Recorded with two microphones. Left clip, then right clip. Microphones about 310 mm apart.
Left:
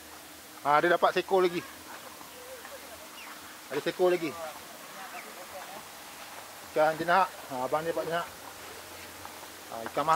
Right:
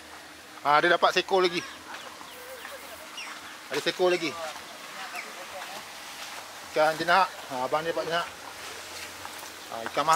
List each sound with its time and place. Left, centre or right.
0.7 s a man's voice: centre
3.7 s a man's voice: centre
6.7 s a man's voice: centre
7.4 s speech: centre
9.7 s speech: centre